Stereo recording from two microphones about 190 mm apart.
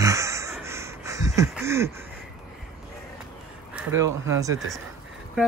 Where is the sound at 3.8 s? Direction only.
15° right (ahead or behind).